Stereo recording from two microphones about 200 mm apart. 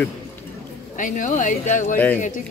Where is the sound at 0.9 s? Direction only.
40° left (ahead or behind).